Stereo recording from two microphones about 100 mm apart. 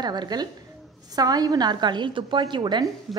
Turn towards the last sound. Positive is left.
turn(degrees=0)  # may be behind; listen again after turning